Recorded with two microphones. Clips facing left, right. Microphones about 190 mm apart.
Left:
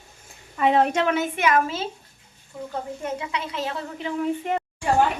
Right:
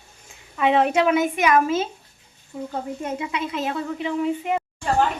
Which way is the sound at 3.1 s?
20° right (ahead or behind).